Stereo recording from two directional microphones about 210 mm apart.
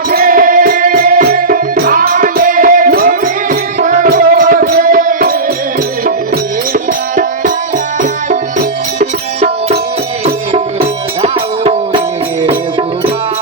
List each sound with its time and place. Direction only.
0.1 s music: 40° right (ahead or behind)
9.0 s music: 30° right (ahead or behind)